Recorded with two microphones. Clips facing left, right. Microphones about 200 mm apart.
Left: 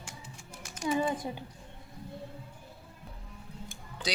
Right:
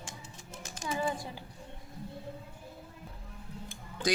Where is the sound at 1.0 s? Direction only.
20° left (ahead or behind).